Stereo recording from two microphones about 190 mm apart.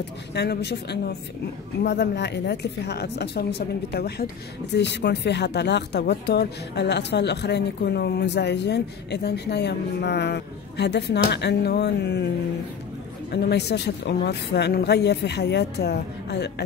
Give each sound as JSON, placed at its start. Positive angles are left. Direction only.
{"t": 0.3, "sound": "a woman's voice", "side_deg": 60}
{"t": 13.3, "sound": "a woman's voice", "side_deg": 60}